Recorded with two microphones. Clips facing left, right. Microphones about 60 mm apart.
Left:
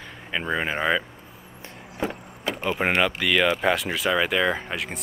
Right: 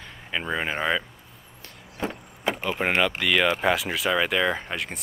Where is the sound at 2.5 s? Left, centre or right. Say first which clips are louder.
Right 2 dB; centre.